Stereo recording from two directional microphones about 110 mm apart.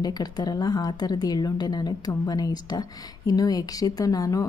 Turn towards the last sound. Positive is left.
turn(degrees=30)  # may be behind; listen again after turning